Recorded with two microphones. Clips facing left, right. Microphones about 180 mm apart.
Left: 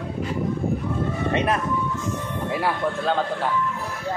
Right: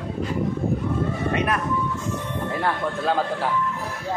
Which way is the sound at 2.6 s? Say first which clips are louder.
Even; 5° right (ahead or behind).